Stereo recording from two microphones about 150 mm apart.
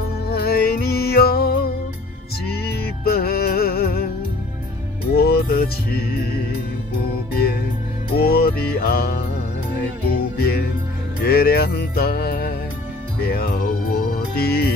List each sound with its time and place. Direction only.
0.3 s music: 90° left
5.1 s music: 90° left
8.2 s music: 90° left